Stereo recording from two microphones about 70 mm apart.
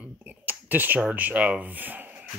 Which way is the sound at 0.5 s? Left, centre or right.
Right.